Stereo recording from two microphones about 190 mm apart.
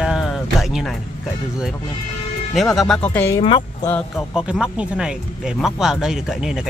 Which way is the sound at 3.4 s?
25° left (ahead or behind).